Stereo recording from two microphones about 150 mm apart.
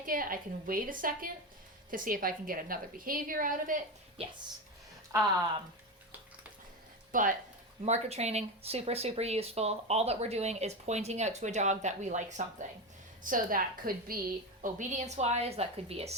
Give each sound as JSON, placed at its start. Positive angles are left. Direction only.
{"t": 0.0, "sound": "a woman's voice", "side_deg": -70}
{"t": 7.1, "sound": "speech", "side_deg": -65}
{"t": 7.9, "sound": "speech", "side_deg": -45}
{"t": 13.2, "sound": "a woman's voice", "side_deg": -65}
{"t": 14.6, "sound": "speech", "side_deg": -55}